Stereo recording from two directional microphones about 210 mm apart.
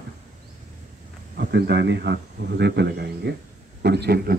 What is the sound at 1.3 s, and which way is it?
A man's voice, 50° right (ahead or behind).